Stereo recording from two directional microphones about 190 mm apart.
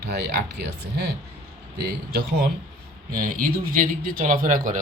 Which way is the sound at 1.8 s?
55° right (ahead or behind).